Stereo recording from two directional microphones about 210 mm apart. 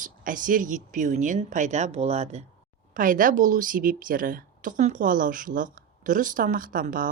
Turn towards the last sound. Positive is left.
turn(degrees=-40)  # may be behind; listen again after turning